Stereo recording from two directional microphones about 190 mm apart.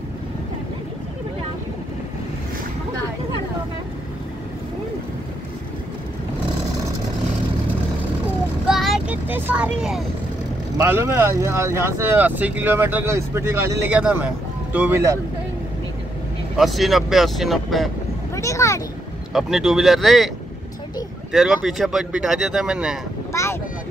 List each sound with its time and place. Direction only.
8.6 s vehicle: centre (ahead or behind)
9.8 s speech: centre (ahead or behind)
10.8 s speech: 10° right (ahead or behind)
16.5 s speech: centre (ahead or behind)
18.3 s speech: 15° left (ahead or behind)
19.3 s speech: centre (ahead or behind)
21.3 s speech: centre (ahead or behind)
23.3 s vehicle: 15° left (ahead or behind)